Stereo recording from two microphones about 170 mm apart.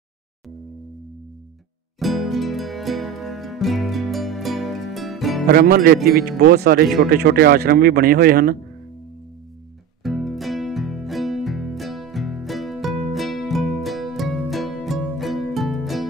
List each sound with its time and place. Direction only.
2.0 s music: centre (ahead or behind)
5.5 s speech: 65° right (ahead or behind)
10.0 s music: centre (ahead or behind)